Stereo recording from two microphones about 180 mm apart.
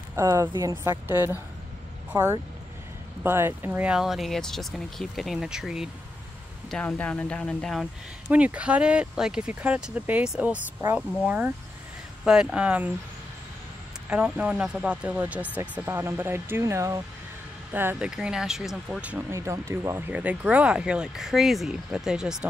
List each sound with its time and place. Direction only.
0.1 s a woman's voice: 20° right (ahead or behind); by 7.9 s 5° left (ahead or behind)
8.3 s speech: 10° right (ahead or behind)
14.0 s speech: 5° right (ahead or behind)